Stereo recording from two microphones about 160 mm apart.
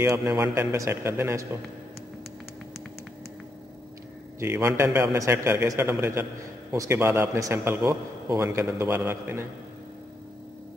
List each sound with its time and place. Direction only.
0.0 s a man's voice: 15° right (ahead or behind)
4.4 s a man's voice: 15° right (ahead or behind)